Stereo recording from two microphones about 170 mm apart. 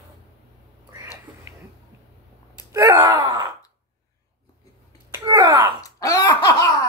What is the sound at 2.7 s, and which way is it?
Wail, 15° right (ahead or behind).